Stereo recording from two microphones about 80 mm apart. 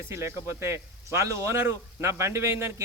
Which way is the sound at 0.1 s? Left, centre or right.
Right.